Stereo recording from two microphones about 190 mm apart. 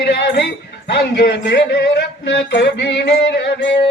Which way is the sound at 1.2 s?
65° left (ahead or behind).